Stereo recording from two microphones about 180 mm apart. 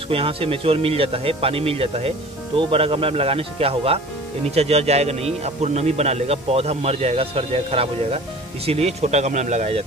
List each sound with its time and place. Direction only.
0.1 s speech: 30° right (ahead or behind)